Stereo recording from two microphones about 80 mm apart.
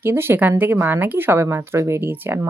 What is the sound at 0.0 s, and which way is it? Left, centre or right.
Speech, right.